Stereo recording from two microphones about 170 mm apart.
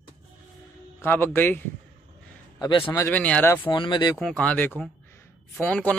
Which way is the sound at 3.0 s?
10° left (ahead or behind).